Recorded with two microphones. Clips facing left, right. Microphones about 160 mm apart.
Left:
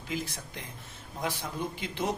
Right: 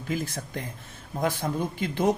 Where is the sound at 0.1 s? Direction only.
50° right (ahead or behind).